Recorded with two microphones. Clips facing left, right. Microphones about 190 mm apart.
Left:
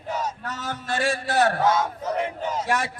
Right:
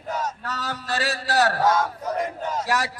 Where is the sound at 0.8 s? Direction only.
50° left (ahead or behind).